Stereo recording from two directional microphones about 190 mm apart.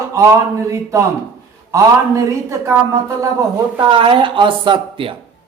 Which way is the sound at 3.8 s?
25° right (ahead or behind).